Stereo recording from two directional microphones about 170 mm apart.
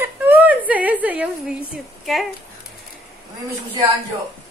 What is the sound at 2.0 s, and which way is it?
Speech, centre (ahead or behind).